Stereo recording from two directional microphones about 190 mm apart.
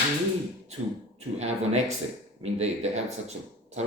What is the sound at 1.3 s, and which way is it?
Speech, 35° right (ahead or behind).